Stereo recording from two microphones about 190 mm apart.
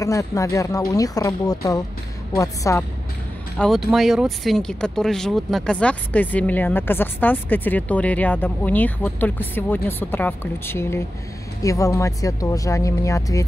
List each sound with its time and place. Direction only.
0.0 s speech: 15° left (ahead or behind)
3.5 s speech: centre (ahead or behind); by 13.4 s 15° left (ahead or behind)